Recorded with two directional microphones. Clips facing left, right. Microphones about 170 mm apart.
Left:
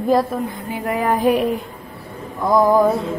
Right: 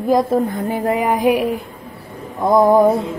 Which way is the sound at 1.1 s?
10° right (ahead or behind).